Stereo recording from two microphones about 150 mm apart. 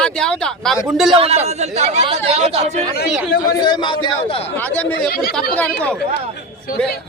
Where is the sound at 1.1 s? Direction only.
40° right (ahead or behind).